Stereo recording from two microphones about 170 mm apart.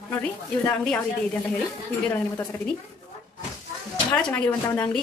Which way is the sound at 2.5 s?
15° left (ahead or behind).